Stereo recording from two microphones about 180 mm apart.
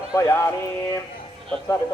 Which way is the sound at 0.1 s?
15° left (ahead or behind).